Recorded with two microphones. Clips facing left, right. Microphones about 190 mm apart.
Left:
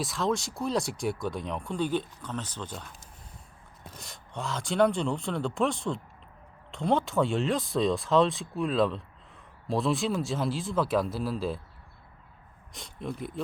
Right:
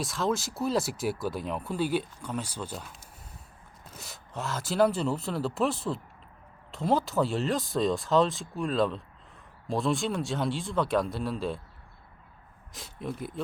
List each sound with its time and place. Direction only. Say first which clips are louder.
0.0 s speech: even; centre (ahead or behind)
12.7 s speech: even; centre (ahead or behind)